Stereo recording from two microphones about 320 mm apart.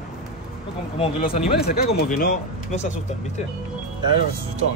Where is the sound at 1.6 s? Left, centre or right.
Left.